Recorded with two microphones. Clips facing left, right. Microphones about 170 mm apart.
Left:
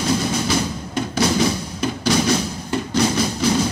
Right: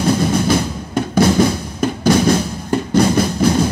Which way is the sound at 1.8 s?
55° right (ahead or behind).